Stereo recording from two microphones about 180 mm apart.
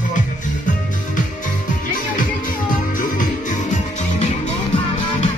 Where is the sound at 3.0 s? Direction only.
50° left (ahead or behind).